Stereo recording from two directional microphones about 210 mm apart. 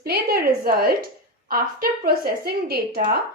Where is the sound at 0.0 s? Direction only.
50° right (ahead or behind).